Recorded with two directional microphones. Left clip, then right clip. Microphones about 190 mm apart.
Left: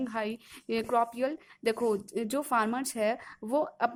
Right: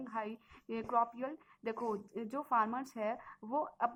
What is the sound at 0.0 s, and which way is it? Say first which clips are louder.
A woman's voice: left 8 dB; 40° left (ahead or behind).